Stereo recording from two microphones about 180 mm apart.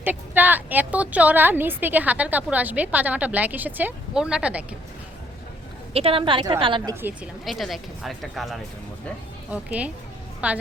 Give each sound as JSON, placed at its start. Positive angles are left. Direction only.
{"t": 0.0, "sound": "a woman's voice", "side_deg": -10}
{"t": 5.9, "sound": "a woman's voice", "side_deg": -30}
{"t": 6.9, "sound": "a woman's voice", "side_deg": -10}